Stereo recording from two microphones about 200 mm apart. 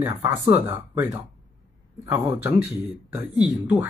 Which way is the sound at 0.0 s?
10° right (ahead or behind).